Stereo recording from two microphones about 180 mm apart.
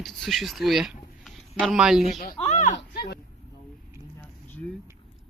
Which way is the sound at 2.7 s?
65° left (ahead or behind).